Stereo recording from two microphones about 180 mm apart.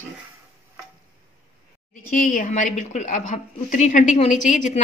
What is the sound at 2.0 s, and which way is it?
A woman's voice, 50° left (ahead or behind).